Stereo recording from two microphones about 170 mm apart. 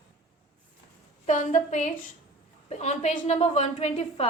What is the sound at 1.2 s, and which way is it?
A woman's voice, 45° left (ahead or behind).